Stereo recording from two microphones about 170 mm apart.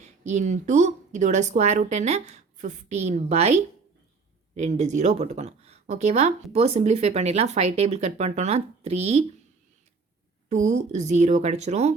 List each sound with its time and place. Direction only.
0.0 s speech: 45° right (ahead or behind)
10.5 s speech: 45° right (ahead or behind)